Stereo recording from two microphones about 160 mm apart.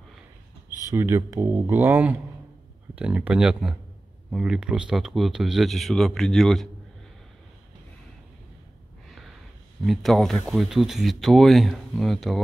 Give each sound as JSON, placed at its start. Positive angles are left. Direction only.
{"t": 0.8, "sound": "speech", "side_deg": -15}
{"t": 9.8, "sound": "speech", "side_deg": 0}